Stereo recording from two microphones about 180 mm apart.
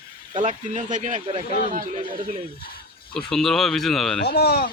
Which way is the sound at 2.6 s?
55° left (ahead or behind).